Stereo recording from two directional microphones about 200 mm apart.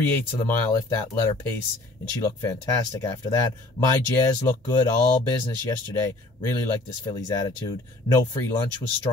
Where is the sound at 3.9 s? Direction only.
20° left (ahead or behind).